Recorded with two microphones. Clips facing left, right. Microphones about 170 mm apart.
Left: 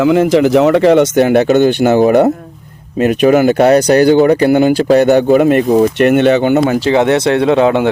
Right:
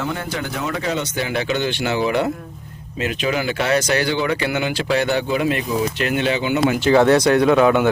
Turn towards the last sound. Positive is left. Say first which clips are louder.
# left 4 dB
turn(degrees=30)  # may be behind; listen again after turning